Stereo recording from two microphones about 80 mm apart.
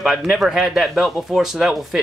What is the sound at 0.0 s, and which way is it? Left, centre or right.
Speech, centre.